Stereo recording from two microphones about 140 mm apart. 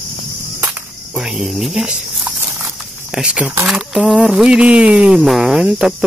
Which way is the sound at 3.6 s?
5° right (ahead or behind).